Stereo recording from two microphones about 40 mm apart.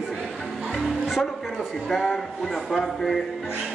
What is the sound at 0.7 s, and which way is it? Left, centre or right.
Speech, centre.